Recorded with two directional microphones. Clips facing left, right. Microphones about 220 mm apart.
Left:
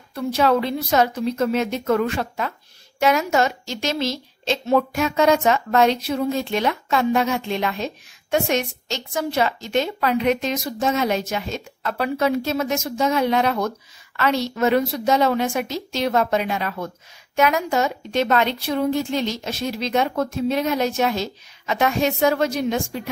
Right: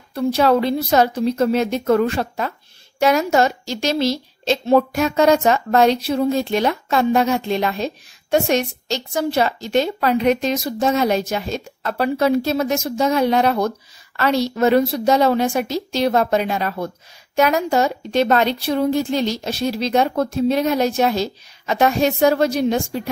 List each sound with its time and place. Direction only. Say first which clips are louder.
0.1 s a woman's voice: right 3 dB; 35° right (ahead or behind)